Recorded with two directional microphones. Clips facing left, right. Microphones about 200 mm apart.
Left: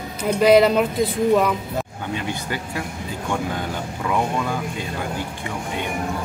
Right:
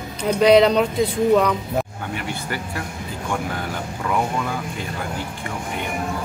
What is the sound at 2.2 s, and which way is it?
Speech, 20° left (ahead or behind).